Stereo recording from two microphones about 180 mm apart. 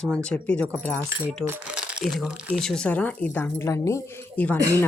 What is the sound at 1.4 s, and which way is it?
Speech, 5° right (ahead or behind).